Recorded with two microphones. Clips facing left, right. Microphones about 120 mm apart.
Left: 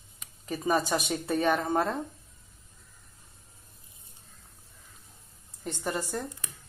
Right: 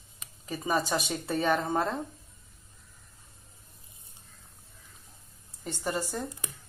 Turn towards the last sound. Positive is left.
turn(degrees=-10)  # may be behind; listen again after turning